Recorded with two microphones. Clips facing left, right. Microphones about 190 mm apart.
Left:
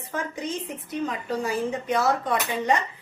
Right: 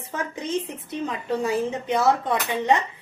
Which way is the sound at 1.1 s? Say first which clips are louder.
Right 6 dB; 25° right (ahead or behind).